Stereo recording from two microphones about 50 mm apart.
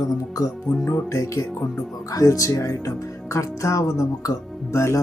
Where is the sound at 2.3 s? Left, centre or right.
Left.